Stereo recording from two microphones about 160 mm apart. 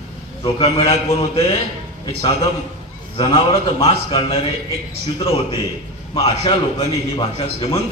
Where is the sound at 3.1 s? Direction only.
35° left (ahead or behind).